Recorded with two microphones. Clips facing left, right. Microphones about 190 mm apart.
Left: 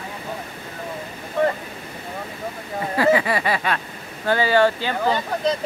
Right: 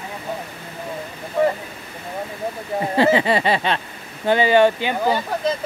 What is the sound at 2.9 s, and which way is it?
Speech, 25° right (ahead or behind).